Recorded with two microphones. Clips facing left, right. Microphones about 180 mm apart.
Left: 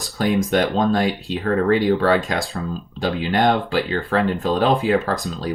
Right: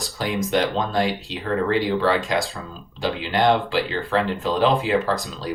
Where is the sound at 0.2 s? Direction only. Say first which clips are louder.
Left 4 dB; 50° left (ahead or behind).